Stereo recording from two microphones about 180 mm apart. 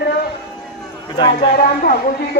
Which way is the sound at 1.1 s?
25° left (ahead or behind).